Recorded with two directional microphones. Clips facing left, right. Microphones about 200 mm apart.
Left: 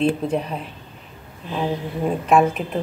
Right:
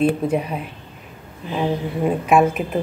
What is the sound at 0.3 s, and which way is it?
Speech, 5° right (ahead or behind).